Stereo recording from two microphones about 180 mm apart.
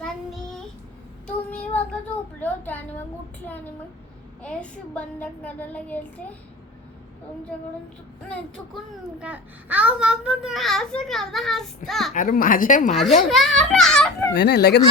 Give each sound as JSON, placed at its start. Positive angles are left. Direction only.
{"t": 1.5, "sound": "child singing", "side_deg": 10}
{"t": 2.4, "sound": "a sound", "side_deg": 10}
{"t": 4.4, "sound": "child singing", "side_deg": 5}
{"t": 8.3, "sound": "a child's voice", "side_deg": 0}
{"t": 12.1, "sound": "speech", "side_deg": 50}
{"t": 12.9, "sound": "a child's voice", "side_deg": 0}
{"t": 14.3, "sound": "speech", "side_deg": 65}